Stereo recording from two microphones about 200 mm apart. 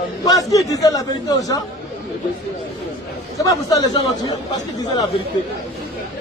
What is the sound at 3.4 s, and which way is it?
Speech, 20° left (ahead or behind).